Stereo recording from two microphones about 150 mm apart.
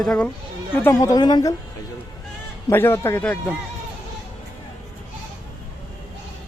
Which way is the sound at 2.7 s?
15° left (ahead or behind).